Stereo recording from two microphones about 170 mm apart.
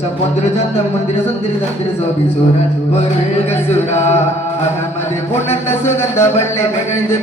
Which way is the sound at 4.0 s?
40° left (ahead or behind).